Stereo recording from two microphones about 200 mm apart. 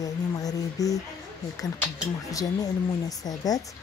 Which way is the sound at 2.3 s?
20° left (ahead or behind).